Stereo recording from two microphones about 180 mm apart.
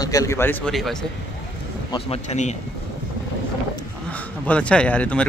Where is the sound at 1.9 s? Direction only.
35° left (ahead or behind).